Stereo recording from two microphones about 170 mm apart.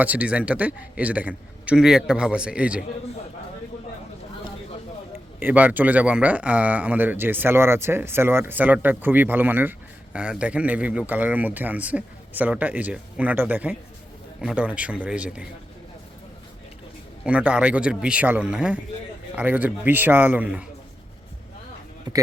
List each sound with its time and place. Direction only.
0.0 s speech: 10° right (ahead or behind)
5.4 s speech: 10° right (ahead or behind)
17.2 s speech: 5° right (ahead or behind)
22.1 s speech: 25° right (ahead or behind)